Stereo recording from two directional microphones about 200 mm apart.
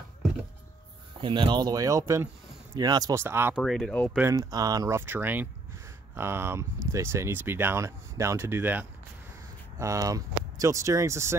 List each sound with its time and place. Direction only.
1.2 s speech: 25° right (ahead or behind)
3.5 s speech: centre (ahead or behind)
4.1 s speech: 15° right (ahead or behind)